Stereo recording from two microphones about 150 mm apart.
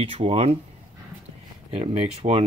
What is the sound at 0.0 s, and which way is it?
Speech, 40° right (ahead or behind).